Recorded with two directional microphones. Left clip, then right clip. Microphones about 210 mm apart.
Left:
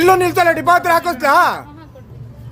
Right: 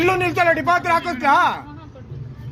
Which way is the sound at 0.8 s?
55° left (ahead or behind).